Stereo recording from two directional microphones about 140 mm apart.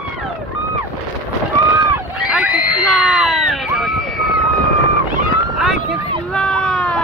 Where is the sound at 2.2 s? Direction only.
5° right (ahead or behind).